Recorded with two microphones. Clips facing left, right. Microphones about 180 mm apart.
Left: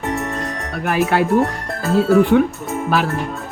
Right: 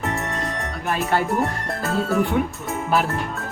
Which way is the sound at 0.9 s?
90° left.